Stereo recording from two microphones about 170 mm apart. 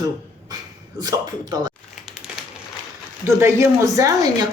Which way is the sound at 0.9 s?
25° right (ahead or behind).